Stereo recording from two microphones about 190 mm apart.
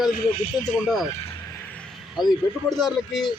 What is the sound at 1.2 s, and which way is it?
Vehicle, 15° left (ahead or behind).